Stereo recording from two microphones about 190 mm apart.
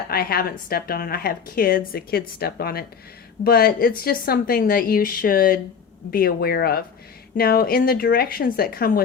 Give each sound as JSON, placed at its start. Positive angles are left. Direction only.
{"t": 0.1, "sound": "a woman's voice", "side_deg": 55}